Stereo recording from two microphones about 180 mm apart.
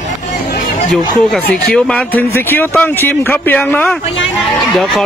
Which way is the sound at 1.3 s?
5° left (ahead or behind).